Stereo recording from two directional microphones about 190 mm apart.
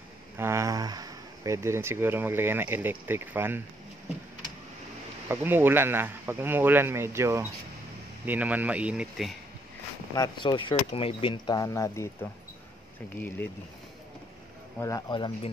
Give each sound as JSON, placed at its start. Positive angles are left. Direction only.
{"t": 0.4, "sound": "speech", "side_deg": -15}
{"t": 5.3, "sound": "a man's voice", "side_deg": -10}
{"t": 10.1, "sound": "speech", "side_deg": 25}
{"t": 14.8, "sound": "speech", "side_deg": 20}